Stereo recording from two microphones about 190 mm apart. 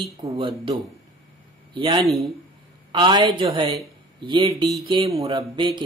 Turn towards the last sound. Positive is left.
turn(degrees=-25)  # may be behind; listen again after turning